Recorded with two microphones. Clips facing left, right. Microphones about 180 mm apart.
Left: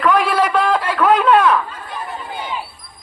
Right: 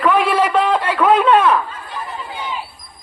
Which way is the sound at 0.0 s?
5° right (ahead or behind).